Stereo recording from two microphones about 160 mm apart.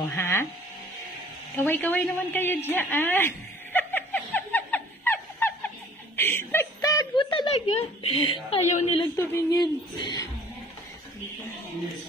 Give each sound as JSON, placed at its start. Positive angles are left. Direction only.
{"t": 0.1, "sound": "speech", "side_deg": 15}
{"t": 1.6, "sound": "a sound", "side_deg": 10}
{"t": 8.5, "sound": "a woman's voice", "side_deg": 45}
{"t": 9.1, "sound": "a woman's voice", "side_deg": 15}